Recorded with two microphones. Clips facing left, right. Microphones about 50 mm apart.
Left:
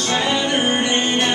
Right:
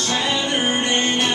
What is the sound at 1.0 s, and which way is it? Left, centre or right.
Music, left.